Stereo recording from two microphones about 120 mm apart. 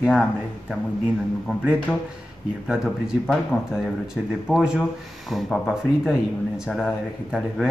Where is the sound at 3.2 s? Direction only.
Centre (ahead or behind).